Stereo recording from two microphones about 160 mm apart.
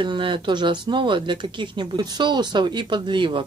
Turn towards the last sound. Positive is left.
turn(degrees=-30)  # may be behind; listen again after turning